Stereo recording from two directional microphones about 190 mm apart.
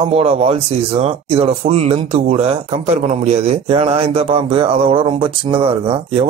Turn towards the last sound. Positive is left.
turn(degrees=-30)  # may be behind; listen again after turning